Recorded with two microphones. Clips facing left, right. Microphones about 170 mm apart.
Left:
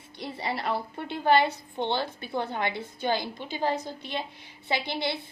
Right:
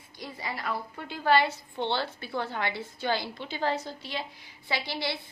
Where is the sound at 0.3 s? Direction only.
30° left (ahead or behind).